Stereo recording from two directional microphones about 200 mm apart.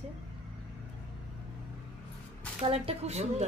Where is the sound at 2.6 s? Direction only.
30° right (ahead or behind).